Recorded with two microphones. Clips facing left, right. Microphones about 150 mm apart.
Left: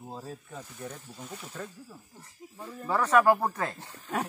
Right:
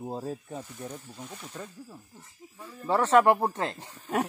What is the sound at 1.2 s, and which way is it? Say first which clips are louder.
Speech: left 3 dB; centre (ahead or behind).